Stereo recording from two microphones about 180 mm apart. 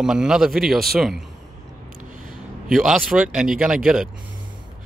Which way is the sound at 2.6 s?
Centre (ahead or behind).